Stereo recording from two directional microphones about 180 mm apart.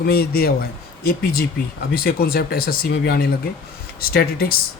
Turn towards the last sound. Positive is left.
turn(degrees=60)  # may be behind; listen again after turning